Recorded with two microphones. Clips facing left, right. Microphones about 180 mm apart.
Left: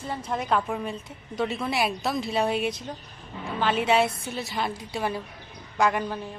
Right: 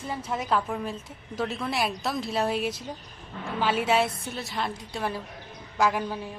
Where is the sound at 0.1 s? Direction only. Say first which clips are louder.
Left 1 dB; 5° right (ahead or behind).